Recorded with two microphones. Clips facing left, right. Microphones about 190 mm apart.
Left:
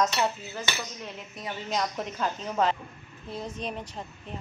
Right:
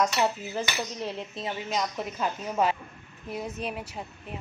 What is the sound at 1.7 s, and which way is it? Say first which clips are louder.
Speech: left 2 dB; 5° right (ahead or behind).